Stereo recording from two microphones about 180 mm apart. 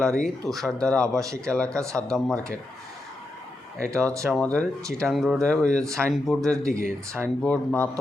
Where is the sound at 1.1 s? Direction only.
15° right (ahead or behind).